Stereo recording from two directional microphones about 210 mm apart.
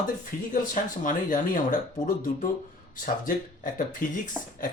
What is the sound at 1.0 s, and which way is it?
Speech, 40° left (ahead or behind).